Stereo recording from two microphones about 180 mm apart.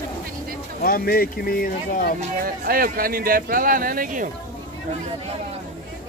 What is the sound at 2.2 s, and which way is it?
Speech, 55° right (ahead or behind).